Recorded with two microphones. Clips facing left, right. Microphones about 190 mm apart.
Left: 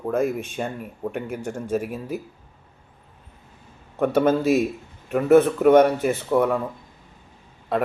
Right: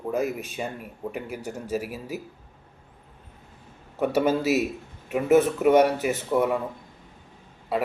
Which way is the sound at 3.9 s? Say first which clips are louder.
Left 3 dB; 5° right (ahead or behind).